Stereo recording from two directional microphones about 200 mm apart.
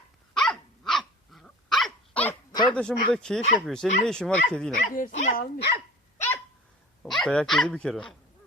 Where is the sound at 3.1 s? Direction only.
5° left (ahead or behind).